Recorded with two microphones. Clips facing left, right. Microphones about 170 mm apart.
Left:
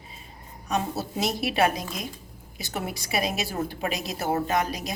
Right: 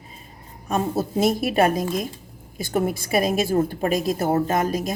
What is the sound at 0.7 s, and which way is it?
A woman's voice, 50° right (ahead or behind).